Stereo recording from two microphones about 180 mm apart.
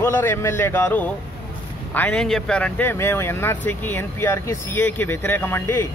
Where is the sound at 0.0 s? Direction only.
10° left (ahead or behind).